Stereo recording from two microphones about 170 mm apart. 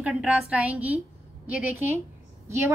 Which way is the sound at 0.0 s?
5° right (ahead or behind).